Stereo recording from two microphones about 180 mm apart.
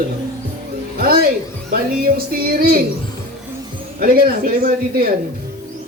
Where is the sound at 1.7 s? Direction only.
55° right (ahead or behind).